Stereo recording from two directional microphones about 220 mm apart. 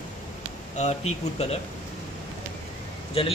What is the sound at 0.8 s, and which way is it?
Speech, 30° left (ahead or behind).